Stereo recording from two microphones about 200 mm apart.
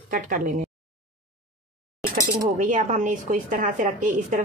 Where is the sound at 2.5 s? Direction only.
40° right (ahead or behind).